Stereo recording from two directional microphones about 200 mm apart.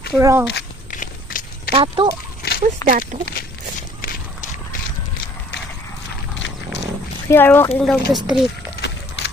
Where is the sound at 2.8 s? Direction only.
15° left (ahead or behind).